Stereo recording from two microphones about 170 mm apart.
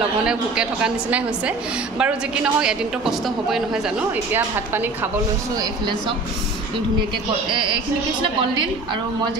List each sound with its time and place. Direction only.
0.2 s a woman's voice: 5° right (ahead or behind)
5.6 s speech: 25° right (ahead or behind)